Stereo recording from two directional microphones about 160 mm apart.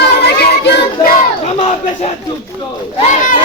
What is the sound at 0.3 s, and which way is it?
Child singing, 90° left.